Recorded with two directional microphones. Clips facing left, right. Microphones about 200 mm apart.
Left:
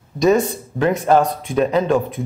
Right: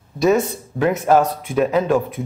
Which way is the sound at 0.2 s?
5° right (ahead or behind).